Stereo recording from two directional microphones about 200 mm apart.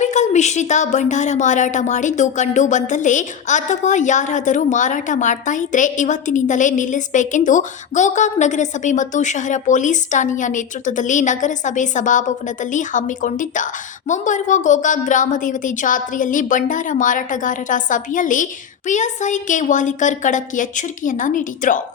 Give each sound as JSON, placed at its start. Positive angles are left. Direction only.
{"t": 0.0, "sound": "a woman's voice", "side_deg": 35}